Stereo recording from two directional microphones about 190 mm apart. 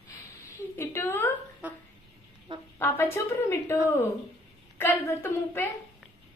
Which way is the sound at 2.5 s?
25° right (ahead or behind).